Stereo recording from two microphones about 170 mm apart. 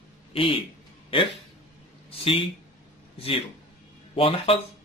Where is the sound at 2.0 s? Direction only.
35° left (ahead or behind).